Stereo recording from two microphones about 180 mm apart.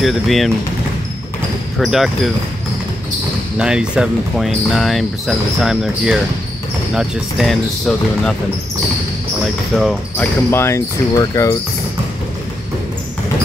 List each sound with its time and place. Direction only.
0.0 s speech: centre (ahead or behind)
1.8 s speech: centre (ahead or behind)
3.5 s speech: 5° right (ahead or behind)
9.8 s speech: centre (ahead or behind)
10.5 s speech: 15° left (ahead or behind)